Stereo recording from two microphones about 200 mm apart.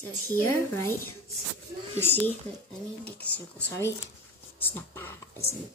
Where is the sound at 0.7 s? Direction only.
10° left (ahead or behind).